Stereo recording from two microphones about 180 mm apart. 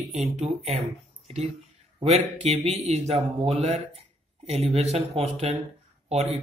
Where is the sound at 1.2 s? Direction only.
35° right (ahead or behind).